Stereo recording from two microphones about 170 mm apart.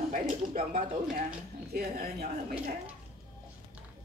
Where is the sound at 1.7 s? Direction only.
60° right (ahead or behind).